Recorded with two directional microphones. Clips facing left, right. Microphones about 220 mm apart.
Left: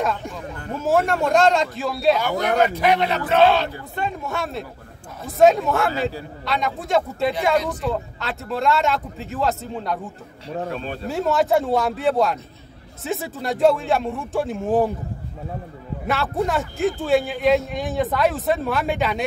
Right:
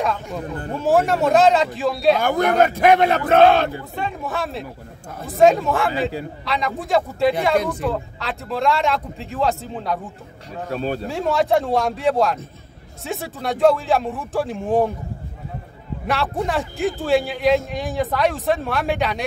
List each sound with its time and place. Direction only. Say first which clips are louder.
0.7 s a man's voice: right 2 dB; centre (ahead or behind)
2.1 s a man's voice: right 3 dB; 50° right (ahead or behind)
3.9 s a man's voice: even; centre (ahead or behind)
10.7 s speech: right 5 dB; 40° right (ahead or behind)
11.1 s a man's voice: left 1 dB; centre (ahead or behind)
16.1 s a man's voice: even; centre (ahead or behind)